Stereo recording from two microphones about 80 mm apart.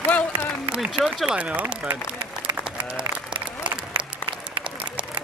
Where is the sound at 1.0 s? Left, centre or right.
Centre.